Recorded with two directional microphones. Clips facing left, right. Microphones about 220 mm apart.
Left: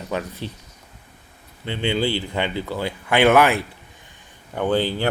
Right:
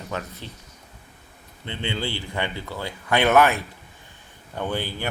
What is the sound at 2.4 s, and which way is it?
Speech, 15° left (ahead or behind).